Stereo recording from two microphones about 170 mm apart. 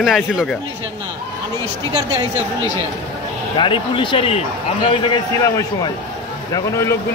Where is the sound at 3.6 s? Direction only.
30° left (ahead or behind).